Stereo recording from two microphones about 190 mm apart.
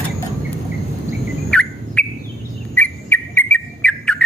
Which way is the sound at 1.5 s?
5° left (ahead or behind).